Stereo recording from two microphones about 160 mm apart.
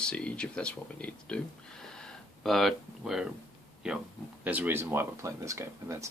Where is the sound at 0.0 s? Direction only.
5° left (ahead or behind).